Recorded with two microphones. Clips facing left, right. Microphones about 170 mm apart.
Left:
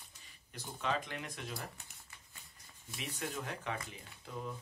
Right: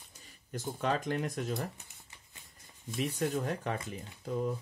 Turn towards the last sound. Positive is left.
turn(degrees=-45)  # may be behind; listen again after turning